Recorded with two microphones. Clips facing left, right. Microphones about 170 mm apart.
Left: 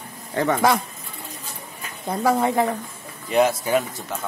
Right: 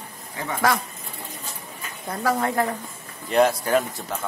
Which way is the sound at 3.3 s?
5° left (ahead or behind).